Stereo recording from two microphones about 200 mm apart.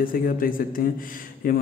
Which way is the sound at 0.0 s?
45° left (ahead or behind).